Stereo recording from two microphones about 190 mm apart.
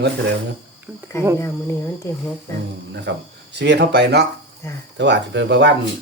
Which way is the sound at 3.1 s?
70° right (ahead or behind).